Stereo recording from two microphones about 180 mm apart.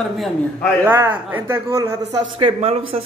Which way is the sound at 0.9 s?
10° right (ahead or behind).